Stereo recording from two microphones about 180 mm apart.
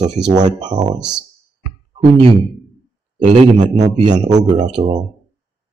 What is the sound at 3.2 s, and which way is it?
A man's voice, 35° right (ahead or behind).